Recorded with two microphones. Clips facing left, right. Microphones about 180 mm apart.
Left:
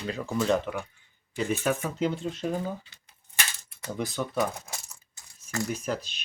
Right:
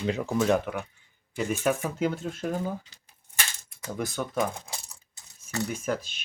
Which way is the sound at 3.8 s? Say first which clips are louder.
Even; 10° right (ahead or behind).